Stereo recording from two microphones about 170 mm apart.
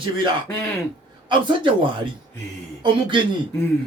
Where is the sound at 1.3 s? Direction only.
25° right (ahead or behind).